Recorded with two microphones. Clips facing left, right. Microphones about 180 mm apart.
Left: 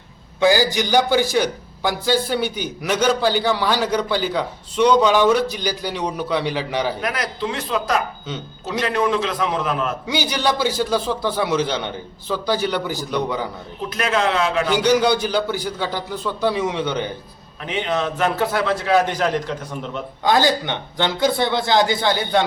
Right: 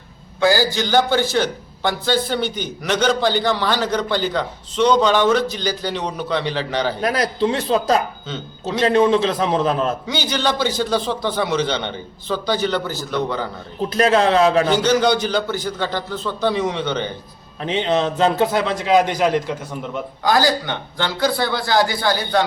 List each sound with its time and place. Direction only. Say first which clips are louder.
0.3 s a man's voice: left 1 dB; 15° left (ahead or behind)
7.0 s a man's voice: right 6 dB; 35° right (ahead or behind)
10.1 s a man's voice: even; 10° left (ahead or behind)
13.9 s speech: right 5 dB; 35° right (ahead or behind)
14.7 s a man's voice: even; 10° left (ahead or behind)
17.6 s a man's voice: right 4 dB; 25° right (ahead or behind); by 20.0 s 10° right (ahead or behind)
20.2 s a man's voice: even; 20° left (ahead or behind)